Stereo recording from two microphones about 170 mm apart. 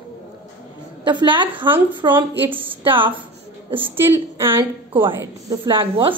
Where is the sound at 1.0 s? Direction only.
30° right (ahead or behind).